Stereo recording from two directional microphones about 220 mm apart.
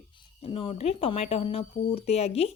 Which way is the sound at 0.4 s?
25° left (ahead or behind).